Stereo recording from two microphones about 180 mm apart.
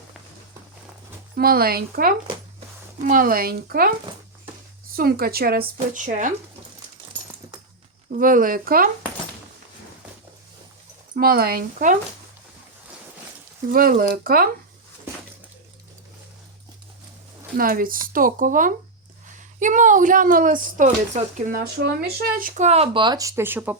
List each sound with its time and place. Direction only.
1.4 s speech: 55° right (ahead or behind)
4.9 s speech: 55° right (ahead or behind)
5.9 s speech: 45° right (ahead or behind)
8.1 s speech: 50° right (ahead or behind)
11.1 s speech: 55° right (ahead or behind)
13.7 s speech: 55° right (ahead or behind)
17.6 s speech: 50° right (ahead or behind)
21.8 s speech: 60° right (ahead or behind); by 23.7 s 10° right (ahead or behind)